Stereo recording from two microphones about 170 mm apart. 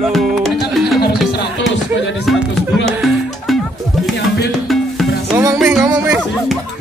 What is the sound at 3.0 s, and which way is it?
Music, centre (ahead or behind).